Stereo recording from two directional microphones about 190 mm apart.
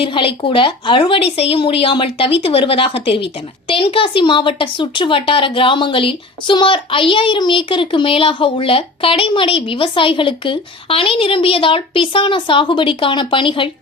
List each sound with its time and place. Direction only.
0.0 s speech: 30° left (ahead or behind)